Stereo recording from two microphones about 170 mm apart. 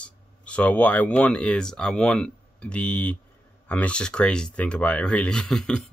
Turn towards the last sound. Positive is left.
turn(degrees=5)  # may be behind; listen again after turning